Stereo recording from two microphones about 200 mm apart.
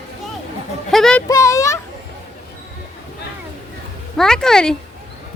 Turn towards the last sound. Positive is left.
turn(degrees=5)  # may be behind; listen again after turning